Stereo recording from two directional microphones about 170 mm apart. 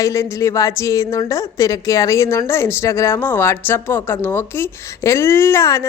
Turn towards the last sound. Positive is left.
turn(degrees=15)  # may be behind; listen again after turning